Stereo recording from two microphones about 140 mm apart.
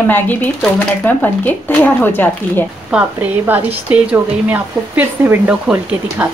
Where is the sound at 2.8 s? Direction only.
10° right (ahead or behind).